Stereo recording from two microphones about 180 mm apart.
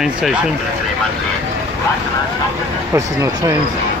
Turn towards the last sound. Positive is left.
turn(degrees=-20)  # may be behind; listen again after turning